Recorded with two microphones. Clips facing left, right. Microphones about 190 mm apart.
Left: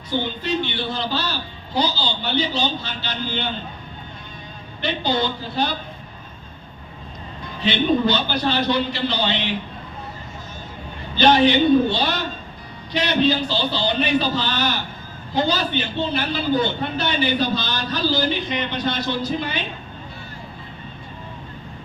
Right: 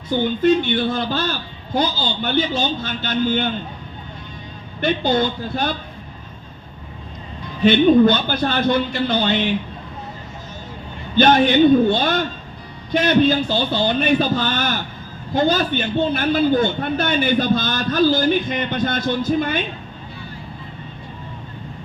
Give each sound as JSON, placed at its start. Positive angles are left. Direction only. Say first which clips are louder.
{"t": 0.1, "sound": "a man's voice", "louder": "right 7 dB", "side_deg": -50}
{"t": 4.8, "sound": "a man's voice", "louder": "right 4 dB", "side_deg": -50}
{"t": 7.6, "sound": "a man's voice", "louder": "right 7 dB", "side_deg": -50}
{"t": 11.2, "sound": "a man's voice", "louder": "right 2 dB", "side_deg": -50}